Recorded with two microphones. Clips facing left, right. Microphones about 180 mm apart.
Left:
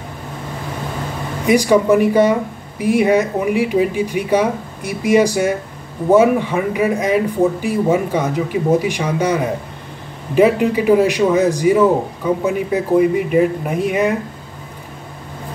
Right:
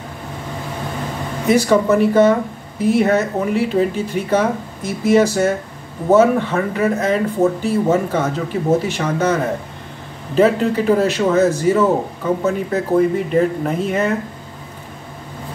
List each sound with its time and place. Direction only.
1.5 s speech: 10° left (ahead or behind)